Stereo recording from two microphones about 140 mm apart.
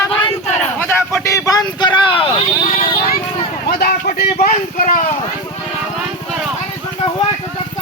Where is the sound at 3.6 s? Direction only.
90° left; by 5.2 s 70° left (ahead or behind).